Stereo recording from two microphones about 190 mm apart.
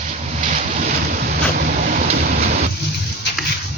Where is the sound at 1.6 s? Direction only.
50° right (ahead or behind).